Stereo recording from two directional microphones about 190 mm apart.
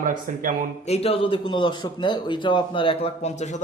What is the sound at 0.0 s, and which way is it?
Speech, 45° right (ahead or behind).